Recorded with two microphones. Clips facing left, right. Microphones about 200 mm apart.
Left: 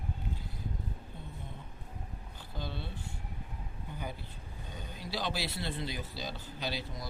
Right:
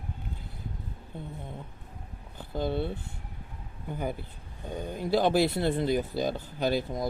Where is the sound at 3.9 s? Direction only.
50° right (ahead or behind).